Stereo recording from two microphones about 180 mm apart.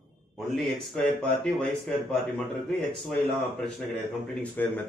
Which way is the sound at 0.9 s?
5° left (ahead or behind).